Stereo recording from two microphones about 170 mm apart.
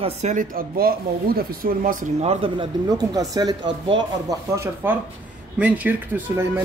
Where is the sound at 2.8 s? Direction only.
20° right (ahead or behind).